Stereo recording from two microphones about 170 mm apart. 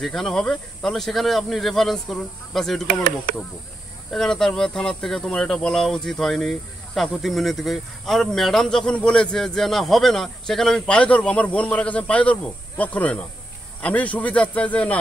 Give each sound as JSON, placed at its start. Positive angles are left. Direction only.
{"t": 0.0, "sound": "speech", "side_deg": 0}
{"t": 2.9, "sound": "speech", "side_deg": -60}
{"t": 4.1, "sound": "speech", "side_deg": 0}